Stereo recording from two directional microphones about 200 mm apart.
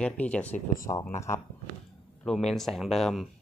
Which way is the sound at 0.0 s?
5° left (ahead or behind).